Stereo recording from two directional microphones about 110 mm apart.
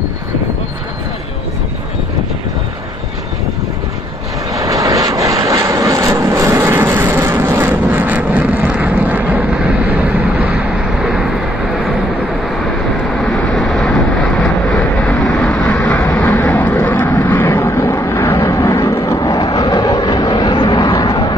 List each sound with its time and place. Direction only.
4.6 s vehicle: 35° right (ahead or behind); by 11.2 s 5° right (ahead or behind)
13.2 s vehicle: centre (ahead or behind); by 21.4 s 45° left (ahead or behind)